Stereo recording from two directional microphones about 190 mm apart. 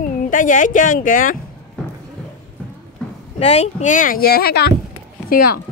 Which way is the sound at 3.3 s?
35° left (ahead or behind).